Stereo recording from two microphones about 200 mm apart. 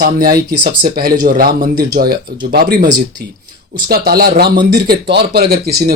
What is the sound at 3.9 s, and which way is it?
Speech, 50° right (ahead or behind).